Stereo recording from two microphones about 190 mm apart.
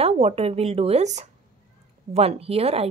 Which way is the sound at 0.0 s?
30° right (ahead or behind).